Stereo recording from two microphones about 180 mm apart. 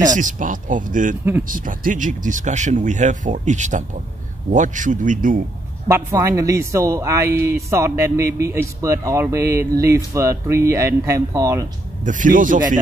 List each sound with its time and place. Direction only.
0.1 s speech: 45° right (ahead or behind)
5.9 s speech: 15° right (ahead or behind)
12.0 s speech: 45° right (ahead or behind)